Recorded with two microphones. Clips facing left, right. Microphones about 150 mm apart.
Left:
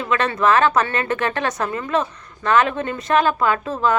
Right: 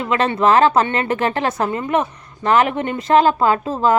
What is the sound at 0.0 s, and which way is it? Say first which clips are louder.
A woman's voice: right 2 dB; 25° right (ahead or behind).